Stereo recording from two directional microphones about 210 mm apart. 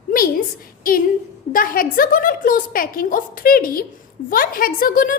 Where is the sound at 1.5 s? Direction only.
40° left (ahead or behind).